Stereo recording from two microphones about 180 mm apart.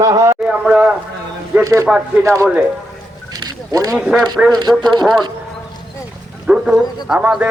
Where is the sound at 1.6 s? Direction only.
15° right (ahead or behind).